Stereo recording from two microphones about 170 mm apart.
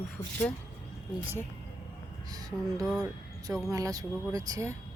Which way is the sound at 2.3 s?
20° right (ahead or behind).